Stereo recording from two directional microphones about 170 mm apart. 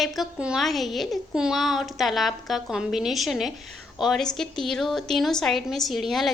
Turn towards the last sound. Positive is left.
turn(degrees=0)  # may be behind; listen again after turning